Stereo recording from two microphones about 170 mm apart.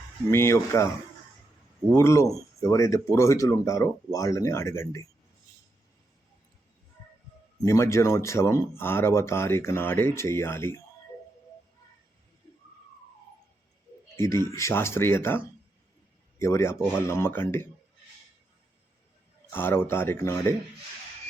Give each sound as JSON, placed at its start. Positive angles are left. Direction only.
{"t": 0.3, "sound": "speech", "side_deg": 15}
{"t": 2.0, "sound": "speech", "side_deg": 15}
{"t": 7.6, "sound": "speech", "side_deg": 15}
{"t": 14.2, "sound": "speech", "side_deg": 15}
{"t": 16.4, "sound": "speech", "side_deg": 15}
{"t": 19.5, "sound": "speech", "side_deg": 15}